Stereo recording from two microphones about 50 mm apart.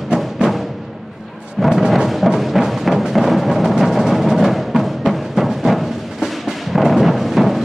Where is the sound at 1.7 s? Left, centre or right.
Centre.